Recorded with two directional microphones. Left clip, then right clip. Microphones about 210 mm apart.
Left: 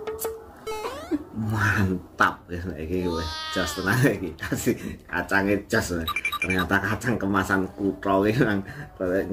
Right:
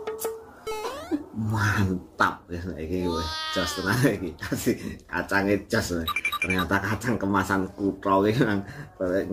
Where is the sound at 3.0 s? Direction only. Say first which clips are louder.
Right 2 dB; centre (ahead or behind).